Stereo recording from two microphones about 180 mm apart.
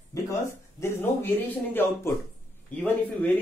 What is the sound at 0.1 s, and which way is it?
A man's voice, 15° left (ahead or behind).